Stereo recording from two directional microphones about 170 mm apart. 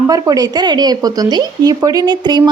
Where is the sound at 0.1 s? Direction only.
20° right (ahead or behind).